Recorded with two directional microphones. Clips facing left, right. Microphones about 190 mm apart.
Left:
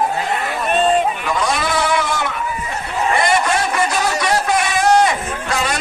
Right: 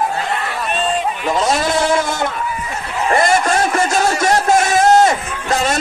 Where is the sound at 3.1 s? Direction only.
45° right (ahead or behind).